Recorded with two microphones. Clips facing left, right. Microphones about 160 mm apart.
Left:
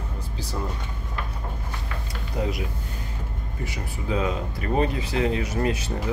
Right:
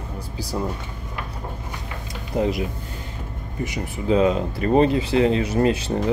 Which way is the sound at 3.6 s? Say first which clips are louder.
Right 6 dB; 20° right (ahead or behind).